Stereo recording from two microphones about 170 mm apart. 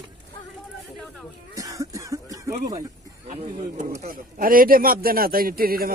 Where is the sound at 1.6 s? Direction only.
20° right (ahead or behind).